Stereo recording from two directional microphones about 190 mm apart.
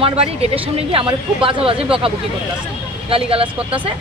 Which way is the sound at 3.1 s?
30° right (ahead or behind).